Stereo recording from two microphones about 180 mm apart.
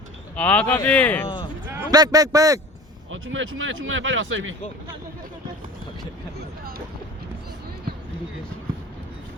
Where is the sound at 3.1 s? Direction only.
90° right.